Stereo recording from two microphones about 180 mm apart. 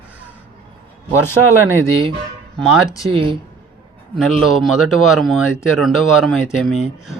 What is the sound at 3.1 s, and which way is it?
Speech, 30° right (ahead or behind).